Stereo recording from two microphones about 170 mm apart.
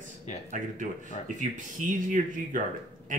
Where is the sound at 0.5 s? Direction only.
50° right (ahead or behind).